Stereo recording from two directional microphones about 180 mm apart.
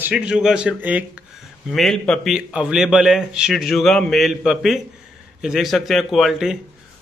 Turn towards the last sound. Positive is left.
turn(degrees=0)  # may be behind; listen again after turning